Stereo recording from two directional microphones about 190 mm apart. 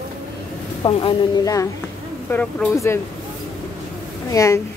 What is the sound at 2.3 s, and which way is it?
Speech, 10° left (ahead or behind).